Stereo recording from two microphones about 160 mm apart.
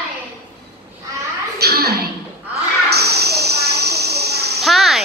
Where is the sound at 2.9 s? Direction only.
90° right.